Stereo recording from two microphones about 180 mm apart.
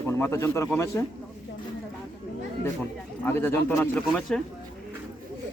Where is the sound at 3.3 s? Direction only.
10° left (ahead or behind).